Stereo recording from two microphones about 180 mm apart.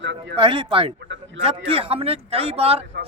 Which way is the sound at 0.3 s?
30° right (ahead or behind).